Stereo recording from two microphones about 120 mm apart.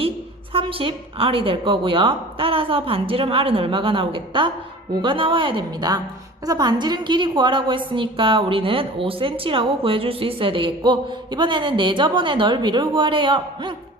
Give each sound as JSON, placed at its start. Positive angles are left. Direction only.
{"t": 0.5, "sound": "a woman's voice", "side_deg": -50}